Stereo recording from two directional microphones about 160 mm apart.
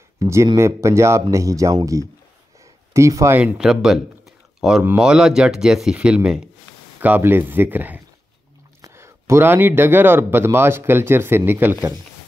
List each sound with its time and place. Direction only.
0.2 s speech: 15° right (ahead or behind)